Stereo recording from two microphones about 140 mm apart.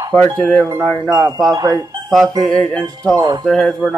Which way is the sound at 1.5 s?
30° right (ahead or behind).